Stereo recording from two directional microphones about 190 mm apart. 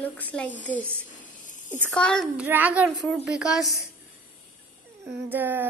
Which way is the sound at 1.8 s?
5° left (ahead or behind).